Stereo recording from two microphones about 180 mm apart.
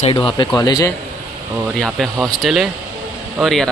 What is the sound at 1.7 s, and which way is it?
A man's voice, centre (ahead or behind).